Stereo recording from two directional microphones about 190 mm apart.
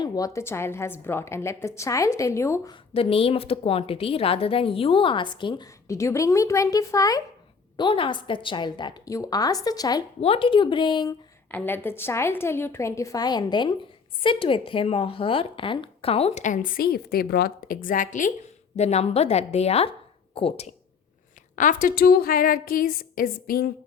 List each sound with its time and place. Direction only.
0.0 s a woman's voice: 15° left (ahead or behind)
2.9 s a woman's voice: 30° left (ahead or behind)
10.2 s a woman's voice: 30° left (ahead or behind)
11.5 s a woman's voice: 10° left (ahead or behind); by 20.7 s 30° left (ahead or behind)
21.5 s a woman's voice: 45° left (ahead or behind)